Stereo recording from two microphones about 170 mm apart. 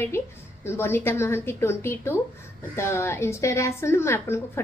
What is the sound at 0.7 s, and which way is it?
A woman's voice, 15° left (ahead or behind).